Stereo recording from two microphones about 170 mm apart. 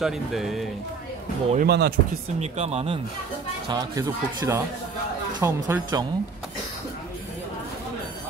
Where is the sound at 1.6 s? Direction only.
75° right (ahead or behind).